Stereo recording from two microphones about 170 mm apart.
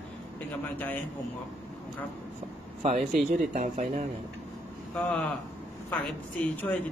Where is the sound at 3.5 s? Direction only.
45° right (ahead or behind).